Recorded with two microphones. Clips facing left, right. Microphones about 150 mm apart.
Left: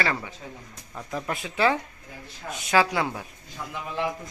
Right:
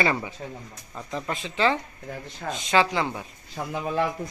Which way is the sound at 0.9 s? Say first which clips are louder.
Even; 5° left (ahead or behind).